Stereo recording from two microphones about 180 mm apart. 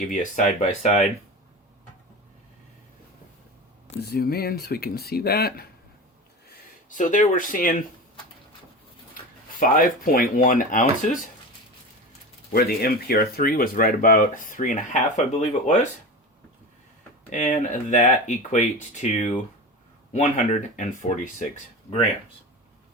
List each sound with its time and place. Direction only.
0.1 s speech: 45° left (ahead or behind)
4.0 s speech: 60° left (ahead or behind)
6.9 s speech: 45° left (ahead or behind)
9.6 s speech: 50° left (ahead or behind)
12.5 s speech: 55° left (ahead or behind)
17.2 s speech: 45° left (ahead or behind)